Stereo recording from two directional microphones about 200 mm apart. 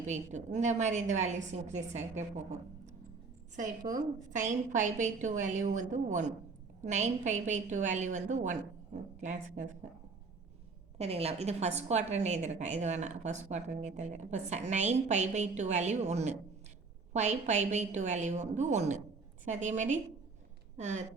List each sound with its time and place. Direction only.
0.0 s a woman's voice: 35° right (ahead or behind)
4.3 s a woman's voice: 40° right (ahead or behind)
10.9 s a woman's voice: 30° right (ahead or behind)